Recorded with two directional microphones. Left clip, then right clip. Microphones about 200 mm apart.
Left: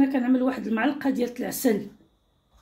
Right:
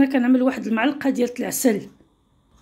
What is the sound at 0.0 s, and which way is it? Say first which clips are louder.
A woman's voice: right 5 dB; 40° right (ahead or behind).